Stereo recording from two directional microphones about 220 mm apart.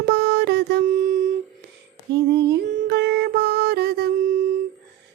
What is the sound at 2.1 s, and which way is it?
Music, 50° right (ahead or behind).